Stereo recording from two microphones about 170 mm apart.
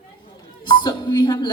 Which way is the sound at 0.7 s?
25° left (ahead or behind).